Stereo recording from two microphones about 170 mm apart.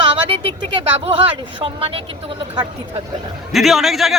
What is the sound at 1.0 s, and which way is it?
Speech, 35° right (ahead or behind).